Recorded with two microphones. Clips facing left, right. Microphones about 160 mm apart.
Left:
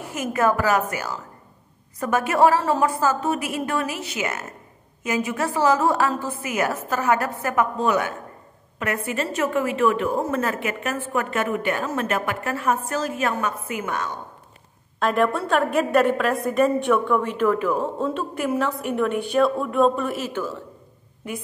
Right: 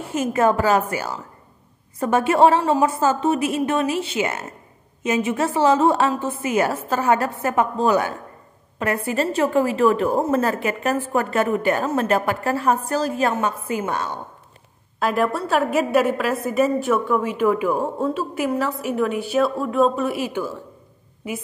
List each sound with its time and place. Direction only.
0.0 s a woman's voice: 25° right (ahead or behind)
15.0 s a woman's voice: 5° right (ahead or behind)